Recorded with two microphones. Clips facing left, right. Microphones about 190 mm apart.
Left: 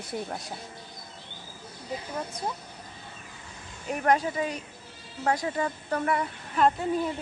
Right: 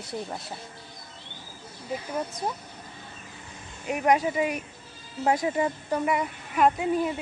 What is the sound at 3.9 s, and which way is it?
A woman's voice, 10° right (ahead or behind).